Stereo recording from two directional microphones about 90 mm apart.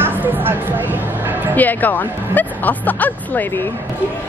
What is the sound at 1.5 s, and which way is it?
A woman's voice, 20° left (ahead or behind).